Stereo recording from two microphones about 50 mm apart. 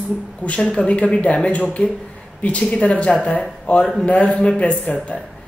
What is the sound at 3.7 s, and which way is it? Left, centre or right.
A man's voice, left.